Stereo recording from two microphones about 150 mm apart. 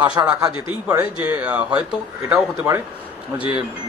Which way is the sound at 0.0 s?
30° right (ahead or behind).